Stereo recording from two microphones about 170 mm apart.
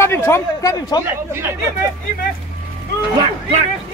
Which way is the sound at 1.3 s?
15° right (ahead or behind).